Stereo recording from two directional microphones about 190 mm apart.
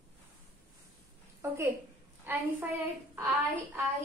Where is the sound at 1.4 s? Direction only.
15° right (ahead or behind).